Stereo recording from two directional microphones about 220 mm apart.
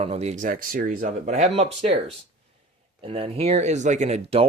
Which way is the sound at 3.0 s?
25° right (ahead or behind).